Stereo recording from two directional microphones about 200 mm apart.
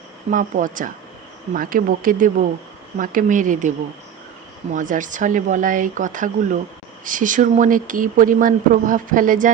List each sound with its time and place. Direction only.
0.3 s speech: 40° right (ahead or behind)
4.7 s speech: 40° right (ahead or behind)